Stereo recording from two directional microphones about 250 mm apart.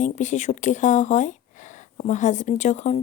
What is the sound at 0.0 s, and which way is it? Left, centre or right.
Speech, left.